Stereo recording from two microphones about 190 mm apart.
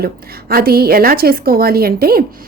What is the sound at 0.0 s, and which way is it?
A woman's voice, 55° right (ahead or behind).